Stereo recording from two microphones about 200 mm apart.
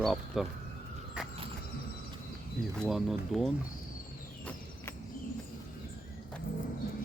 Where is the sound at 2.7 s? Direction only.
Centre (ahead or behind).